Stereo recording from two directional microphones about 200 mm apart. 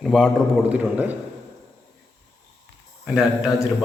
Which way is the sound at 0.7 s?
10° right (ahead or behind).